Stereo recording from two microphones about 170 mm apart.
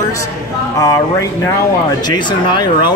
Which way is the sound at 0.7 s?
20° left (ahead or behind).